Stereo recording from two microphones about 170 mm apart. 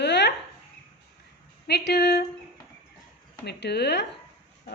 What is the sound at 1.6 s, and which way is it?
Speech, 75° left (ahead or behind).